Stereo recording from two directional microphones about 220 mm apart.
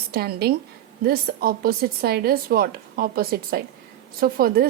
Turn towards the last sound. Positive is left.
turn(degrees=-40)  # may be behind; listen again after turning